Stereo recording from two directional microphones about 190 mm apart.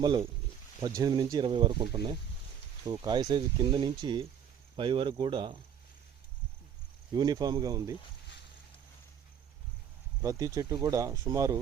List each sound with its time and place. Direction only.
0.0 s speech: 25° right (ahead or behind)
7.1 s speech: 20° right (ahead or behind)
10.2 s speech: 15° right (ahead or behind)